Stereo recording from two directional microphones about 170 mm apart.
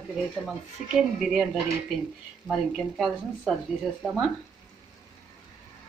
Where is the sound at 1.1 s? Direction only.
5° right (ahead or behind).